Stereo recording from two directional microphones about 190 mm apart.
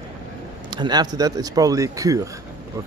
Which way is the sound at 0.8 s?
20° right (ahead or behind).